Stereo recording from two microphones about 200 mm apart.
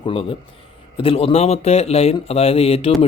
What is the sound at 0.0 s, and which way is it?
A man's voice, 25° left (ahead or behind).